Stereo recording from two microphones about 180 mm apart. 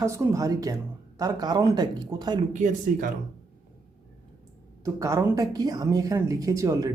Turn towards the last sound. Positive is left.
turn(degrees=-20)  # may be behind; listen again after turning